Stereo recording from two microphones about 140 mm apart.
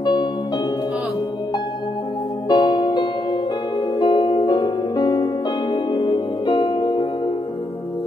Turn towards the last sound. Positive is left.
turn(degrees=30)  # may be behind; listen again after turning